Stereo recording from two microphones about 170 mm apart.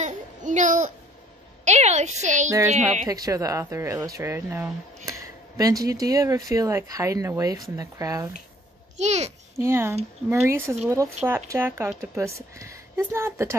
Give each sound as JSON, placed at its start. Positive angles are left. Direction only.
{"t": 0.0, "sound": "a sound", "side_deg": -45}
{"t": 1.6, "sound": "a child's voice", "side_deg": -40}
{"t": 3.1, "sound": "speech", "side_deg": -20}
{"t": 8.9, "sound": "a child's voice", "side_deg": -40}
{"t": 9.6, "sound": "speech", "side_deg": -15}